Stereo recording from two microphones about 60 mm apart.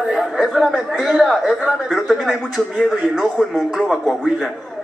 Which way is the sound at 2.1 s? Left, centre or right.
Centre.